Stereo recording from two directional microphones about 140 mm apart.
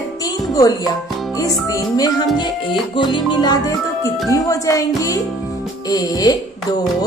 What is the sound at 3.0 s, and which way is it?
Music, 35° left (ahead or behind).